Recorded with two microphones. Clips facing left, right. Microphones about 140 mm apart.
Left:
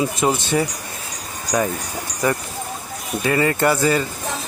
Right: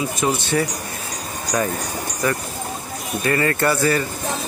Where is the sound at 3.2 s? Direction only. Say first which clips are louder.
Left 2 dB; 15° left (ahead or behind).